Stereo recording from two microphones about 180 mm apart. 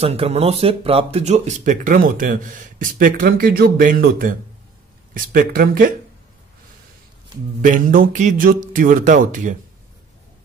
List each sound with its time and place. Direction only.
0.0 s speech: 35° right (ahead or behind); by 5.9 s 50° right (ahead or behind)
7.6 s speech: 45° right (ahead or behind)